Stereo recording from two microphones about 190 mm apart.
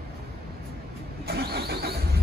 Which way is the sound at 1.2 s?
55° right (ahead or behind).